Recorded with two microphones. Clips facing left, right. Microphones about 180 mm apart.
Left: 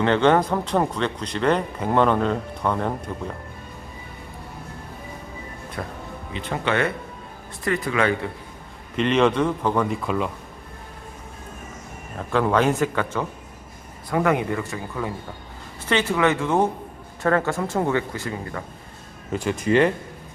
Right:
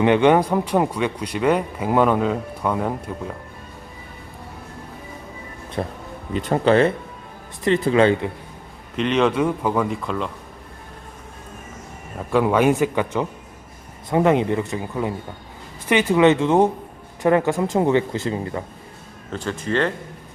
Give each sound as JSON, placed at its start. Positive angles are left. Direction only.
{"t": 0.0, "sound": "speech", "side_deg": -15}
{"t": 5.8, "sound": "speech", "side_deg": -25}
{"t": 6.3, "sound": "speech", "side_deg": -40}
{"t": 9.0, "sound": "a man's voice", "side_deg": 0}
{"t": 12.1, "sound": "speech", "side_deg": -10}
{"t": 19.3, "sound": "speech", "side_deg": 10}